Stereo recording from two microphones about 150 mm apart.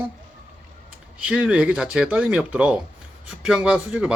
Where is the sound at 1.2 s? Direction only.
10° right (ahead or behind).